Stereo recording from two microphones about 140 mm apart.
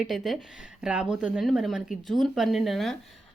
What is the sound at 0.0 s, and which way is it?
Speech, centre (ahead or behind).